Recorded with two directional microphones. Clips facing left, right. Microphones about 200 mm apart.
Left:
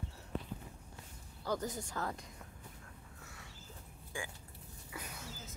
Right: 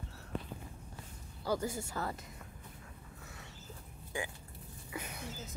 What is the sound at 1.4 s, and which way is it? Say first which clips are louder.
Speech: right 3 dB; 10° right (ahead or behind).